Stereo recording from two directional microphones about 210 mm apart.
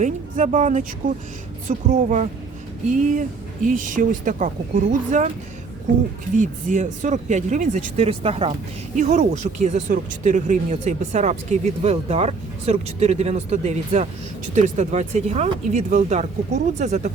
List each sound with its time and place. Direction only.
0.0 s speech: 35° right (ahead or behind)
6.3 s speech: 35° right (ahead or behind)